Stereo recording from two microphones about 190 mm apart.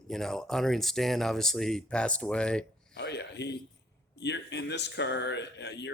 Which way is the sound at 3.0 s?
60° left (ahead or behind).